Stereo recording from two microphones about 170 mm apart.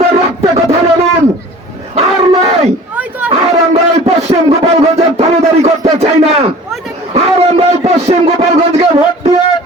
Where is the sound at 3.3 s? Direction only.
40° right (ahead or behind).